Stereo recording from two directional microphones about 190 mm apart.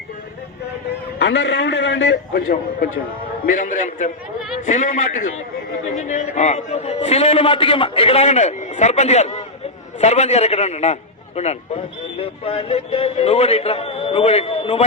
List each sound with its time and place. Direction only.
1.2 s a man's voice: 70° left (ahead or behind)
3.8 s a man's voice: 45° left (ahead or behind)